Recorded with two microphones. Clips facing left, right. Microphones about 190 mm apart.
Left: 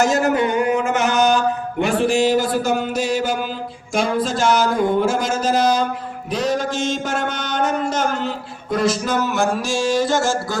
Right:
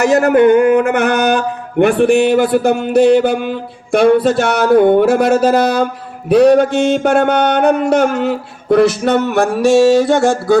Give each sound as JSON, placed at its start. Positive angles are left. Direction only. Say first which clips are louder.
{"t": 0.0, "sound": "mantra", "louder": "right 8 dB", "side_deg": -60}